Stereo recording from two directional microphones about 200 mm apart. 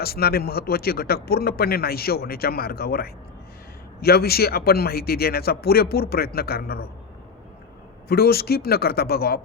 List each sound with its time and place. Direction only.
0.0 s speech: 50° left (ahead or behind)
8.0 s speech: 50° left (ahead or behind)